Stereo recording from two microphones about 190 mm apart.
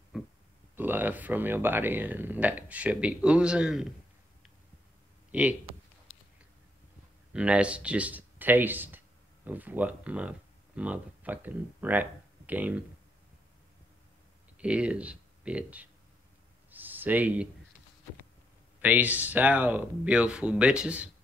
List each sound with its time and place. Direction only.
0.1 s a sound: centre (ahead or behind)
0.7 s speech: 10° right (ahead or behind)
5.3 s speech: 5° right (ahead or behind)
7.3 s speech: 5° right (ahead or behind)
14.6 s speech: 5° right (ahead or behind)
16.7 s a sound: 10° right (ahead or behind)
18.8 s speech: 10° right (ahead or behind)